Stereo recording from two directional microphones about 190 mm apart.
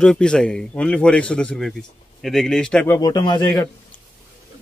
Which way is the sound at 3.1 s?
20° left (ahead or behind).